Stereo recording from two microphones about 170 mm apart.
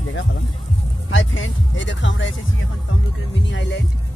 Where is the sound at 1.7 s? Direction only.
90° left.